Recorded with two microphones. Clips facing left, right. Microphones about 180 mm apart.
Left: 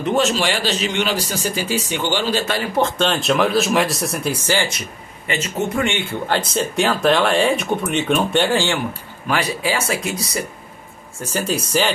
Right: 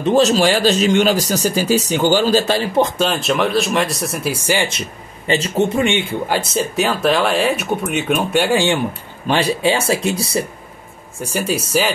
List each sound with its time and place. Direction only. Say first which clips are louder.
0.0 s speech: right 5 dB; 35° right (ahead or behind)
3.0 s speech: even; centre (ahead or behind)
4.7 s speech: right 4 dB; 30° right (ahead or behind)
5.9 s speech: right 3 dB; 20° right (ahead or behind)
9.3 s speech: right 5 dB; 25° right (ahead or behind)
11.1 s speech: right 2 dB; 10° right (ahead or behind)